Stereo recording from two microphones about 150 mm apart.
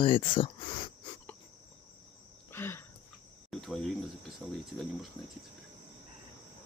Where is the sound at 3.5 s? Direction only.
Centre (ahead or behind).